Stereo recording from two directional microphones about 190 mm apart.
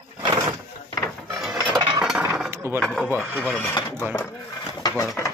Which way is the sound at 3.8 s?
25° left (ahead or behind).